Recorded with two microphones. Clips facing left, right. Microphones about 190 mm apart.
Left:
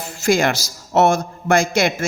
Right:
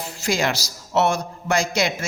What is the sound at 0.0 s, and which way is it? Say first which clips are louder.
A man's voice: left 6 dB; 50° left (ahead or behind).